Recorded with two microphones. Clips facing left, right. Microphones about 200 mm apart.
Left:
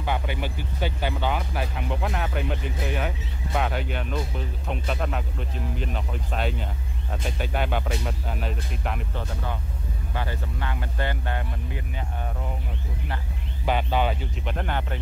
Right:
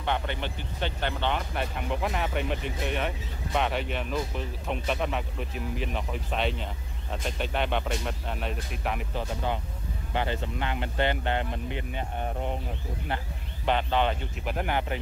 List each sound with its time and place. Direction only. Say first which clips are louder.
0.0 s speech: left 2 dB; 5° left (ahead or behind)
9.1 s speech: right 2 dB; 20° right (ahead or behind)
13.7 s speech: left 1 dB; 10° left (ahead or behind)
14.4 s speech: right 2 dB; 5° right (ahead or behind)